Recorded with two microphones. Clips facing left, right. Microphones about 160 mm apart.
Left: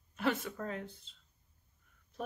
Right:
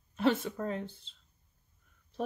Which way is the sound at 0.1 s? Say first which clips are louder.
Right 5 dB; 30° right (ahead or behind).